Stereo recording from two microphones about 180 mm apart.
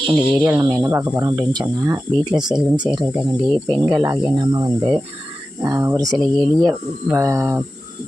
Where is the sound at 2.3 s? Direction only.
5° right (ahead or behind).